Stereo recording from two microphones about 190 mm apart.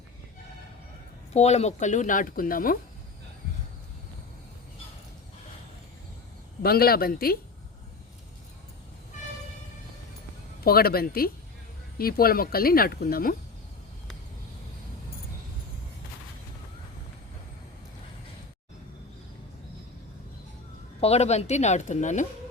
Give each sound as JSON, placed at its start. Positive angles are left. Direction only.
{"t": 1.3, "sound": "speech", "side_deg": 35}
{"t": 6.6, "sound": "speech", "side_deg": 55}
{"t": 10.6, "sound": "speech", "side_deg": 55}
{"t": 21.0, "sound": "speech", "side_deg": 35}